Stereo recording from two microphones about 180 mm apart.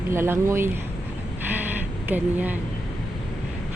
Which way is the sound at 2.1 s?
10° right (ahead or behind).